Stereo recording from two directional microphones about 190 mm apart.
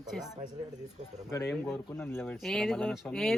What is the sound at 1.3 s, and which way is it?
Speech, 15° left (ahead or behind).